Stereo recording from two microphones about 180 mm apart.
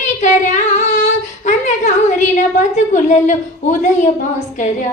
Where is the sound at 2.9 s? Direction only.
40° left (ahead or behind).